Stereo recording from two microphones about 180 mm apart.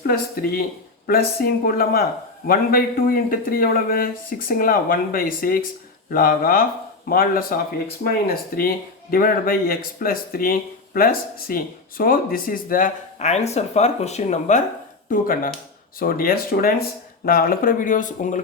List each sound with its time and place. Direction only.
0.0 s speech: 55° left (ahead or behind)